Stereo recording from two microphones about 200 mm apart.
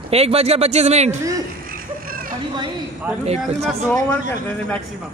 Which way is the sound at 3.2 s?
30° right (ahead or behind).